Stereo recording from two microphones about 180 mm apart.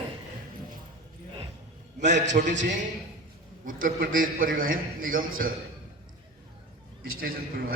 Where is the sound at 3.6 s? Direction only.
50° right (ahead or behind).